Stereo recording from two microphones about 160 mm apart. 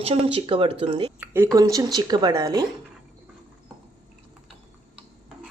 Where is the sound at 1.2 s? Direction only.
15° right (ahead or behind).